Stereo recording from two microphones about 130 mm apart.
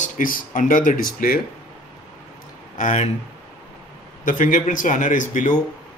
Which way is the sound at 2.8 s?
65° left (ahead or behind).